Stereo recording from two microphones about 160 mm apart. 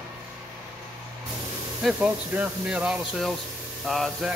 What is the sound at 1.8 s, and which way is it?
Speech, 5° right (ahead or behind).